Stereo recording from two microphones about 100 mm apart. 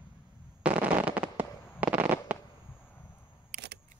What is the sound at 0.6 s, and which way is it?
Fireworks, 15° right (ahead or behind).